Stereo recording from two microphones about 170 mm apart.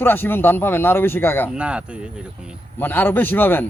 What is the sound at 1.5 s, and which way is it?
Speech, 5° right (ahead or behind).